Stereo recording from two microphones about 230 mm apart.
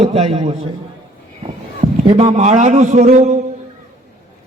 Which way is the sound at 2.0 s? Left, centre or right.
Right.